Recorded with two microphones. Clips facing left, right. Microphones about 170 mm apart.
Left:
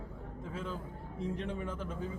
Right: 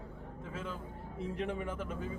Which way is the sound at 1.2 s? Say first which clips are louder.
Even; 5° right (ahead or behind).